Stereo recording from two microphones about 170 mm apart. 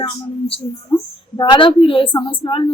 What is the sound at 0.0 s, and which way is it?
A woman's voice, 35° left (ahead or behind).